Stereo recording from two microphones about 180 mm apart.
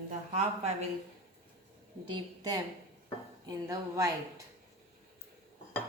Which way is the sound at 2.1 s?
20° right (ahead or behind).